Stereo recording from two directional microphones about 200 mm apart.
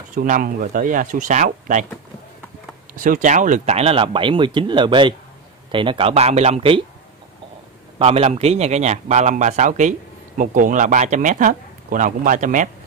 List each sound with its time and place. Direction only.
0.1 s a man's voice: 40° right (ahead or behind)
3.0 s speech: 40° right (ahead or behind)
8.0 s a man's voice: 30° right (ahead or behind)